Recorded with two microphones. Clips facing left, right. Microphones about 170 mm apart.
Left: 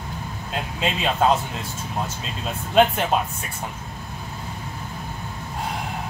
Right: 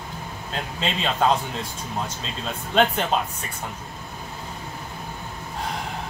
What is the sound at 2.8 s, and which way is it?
Speech, 5° left (ahead or behind).